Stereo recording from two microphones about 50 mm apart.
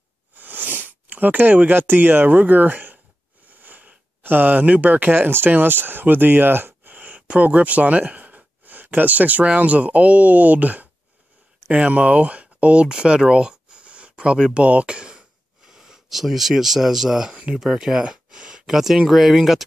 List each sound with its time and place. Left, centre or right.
0.4 s speech: right
3.6 s a sound: right
5.1 s speech: right
11.6 s speech: right